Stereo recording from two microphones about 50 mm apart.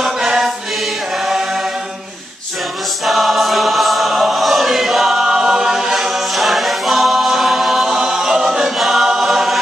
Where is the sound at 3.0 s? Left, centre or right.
Centre.